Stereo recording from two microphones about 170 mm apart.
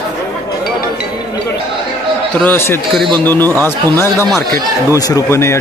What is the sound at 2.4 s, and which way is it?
Speech, 15° left (ahead or behind).